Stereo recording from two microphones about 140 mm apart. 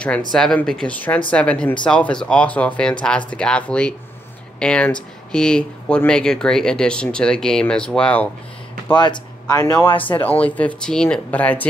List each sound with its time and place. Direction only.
0.3 s speech: 5° left (ahead or behind)
8.9 s speech: 35° left (ahead or behind)
10.2 s speech: 10° left (ahead or behind)